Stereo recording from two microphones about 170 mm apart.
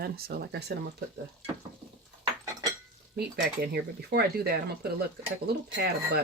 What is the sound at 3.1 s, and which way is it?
Speech, 65° right (ahead or behind).